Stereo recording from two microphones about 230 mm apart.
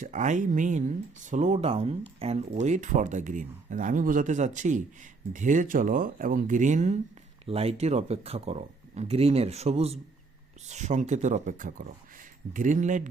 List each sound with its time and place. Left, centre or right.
0.0 s speech: right